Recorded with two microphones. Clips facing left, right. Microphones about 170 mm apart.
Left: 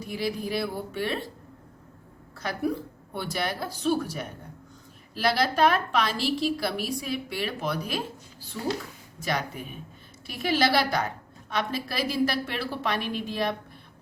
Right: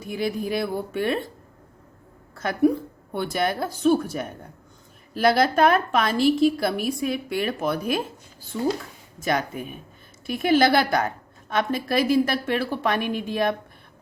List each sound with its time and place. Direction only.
0.0 s a woman's voice: 50° right (ahead or behind)
2.3 s a sound: 50° right (ahead or behind)
3.1 s a woman's voice: 50° right (ahead or behind)
10.2 s a woman's voice: 50° right (ahead or behind)